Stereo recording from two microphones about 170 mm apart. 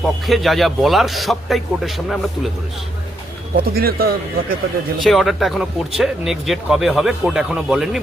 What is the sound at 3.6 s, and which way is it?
A man's voice, 60° right (ahead or behind).